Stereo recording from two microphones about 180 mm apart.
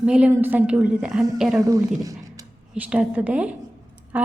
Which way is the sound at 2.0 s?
20° right (ahead or behind).